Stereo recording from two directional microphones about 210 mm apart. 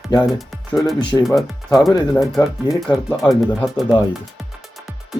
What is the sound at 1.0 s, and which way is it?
Speech, 20° left (ahead or behind).